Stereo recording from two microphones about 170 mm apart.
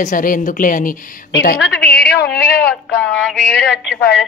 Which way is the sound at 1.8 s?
70° left (ahead or behind).